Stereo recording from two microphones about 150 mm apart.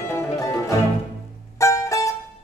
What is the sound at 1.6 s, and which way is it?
Music, 20° left (ahead or behind).